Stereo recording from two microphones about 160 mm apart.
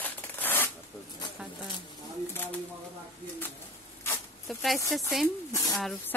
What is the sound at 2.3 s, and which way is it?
Speech, 10° left (ahead or behind).